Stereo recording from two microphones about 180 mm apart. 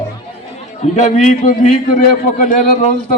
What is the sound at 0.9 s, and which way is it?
A man's voice, 40° left (ahead or behind).